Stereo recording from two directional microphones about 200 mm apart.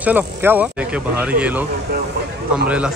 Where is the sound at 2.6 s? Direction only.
5° right (ahead or behind).